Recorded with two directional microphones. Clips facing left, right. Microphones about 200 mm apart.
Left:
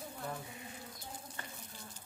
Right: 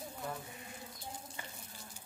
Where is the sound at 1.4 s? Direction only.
10° right (ahead or behind).